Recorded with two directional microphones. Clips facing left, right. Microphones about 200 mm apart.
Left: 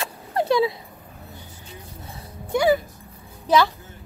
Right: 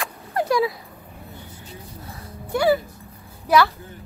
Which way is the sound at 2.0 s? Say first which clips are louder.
Left 2 dB; 20° left (ahead or behind).